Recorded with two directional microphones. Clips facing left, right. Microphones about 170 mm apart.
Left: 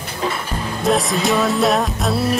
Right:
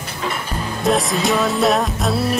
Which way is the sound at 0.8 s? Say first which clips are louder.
Even; centre (ahead or behind).